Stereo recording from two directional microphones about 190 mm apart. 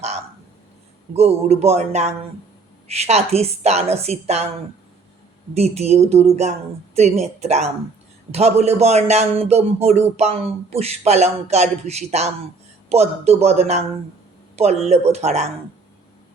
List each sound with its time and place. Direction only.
1.1 s speech: 35° right (ahead or behind)
5.5 s speech: 35° right (ahead or behind)